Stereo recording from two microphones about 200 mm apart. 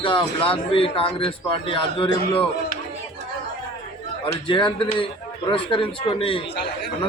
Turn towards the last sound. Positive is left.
turn(degrees=55)  # may be behind; listen again after turning